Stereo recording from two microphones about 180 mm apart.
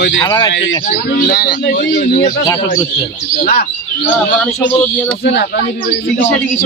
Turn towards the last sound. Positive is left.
turn(degrees=65)  # may be behind; listen again after turning